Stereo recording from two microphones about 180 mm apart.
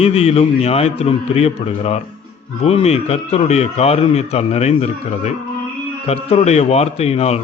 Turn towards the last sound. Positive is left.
turn(degrees=35)  # may be behind; listen again after turning